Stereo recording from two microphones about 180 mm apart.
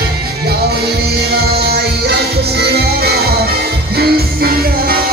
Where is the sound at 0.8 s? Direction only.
60° right (ahead or behind).